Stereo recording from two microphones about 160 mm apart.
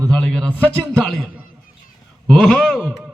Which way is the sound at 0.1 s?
5° left (ahead or behind).